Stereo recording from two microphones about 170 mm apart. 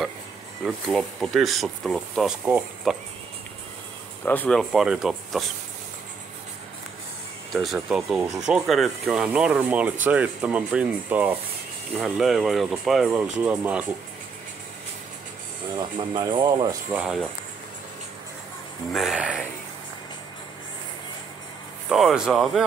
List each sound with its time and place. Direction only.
0.7 s speech: 5° left (ahead or behind)
4.2 s speech: 10° left (ahead or behind)
7.5 s speech: centre (ahead or behind)
15.7 s speech: 25° right (ahead or behind)
16.9 s speech: 5° right (ahead or behind)
18.9 s speech: 5° right (ahead or behind)
21.8 s speech: 5° right (ahead or behind)